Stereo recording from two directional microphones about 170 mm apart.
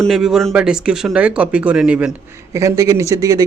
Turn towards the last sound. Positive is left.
turn(degrees=-20)  # may be behind; listen again after turning